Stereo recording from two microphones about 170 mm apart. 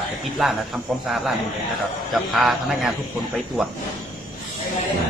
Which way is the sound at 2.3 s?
Centre (ahead or behind).